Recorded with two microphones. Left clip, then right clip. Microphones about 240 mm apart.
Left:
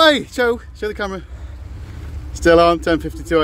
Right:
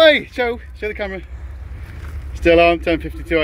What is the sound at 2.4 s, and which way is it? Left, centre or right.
Speech, left.